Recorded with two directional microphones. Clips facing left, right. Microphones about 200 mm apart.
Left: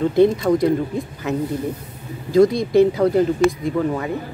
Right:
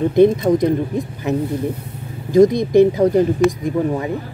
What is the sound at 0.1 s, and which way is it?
Speech, 20° right (ahead or behind).